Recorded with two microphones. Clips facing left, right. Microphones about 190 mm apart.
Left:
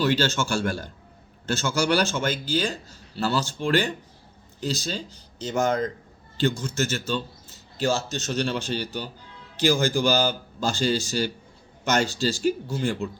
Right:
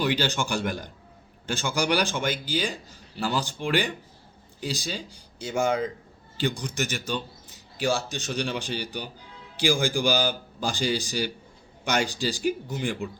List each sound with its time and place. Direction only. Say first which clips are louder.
0.0 s a man's voice: left 3 dB; 15° right (ahead or behind)